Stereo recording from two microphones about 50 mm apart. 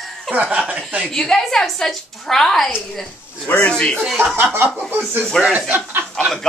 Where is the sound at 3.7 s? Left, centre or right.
Centre.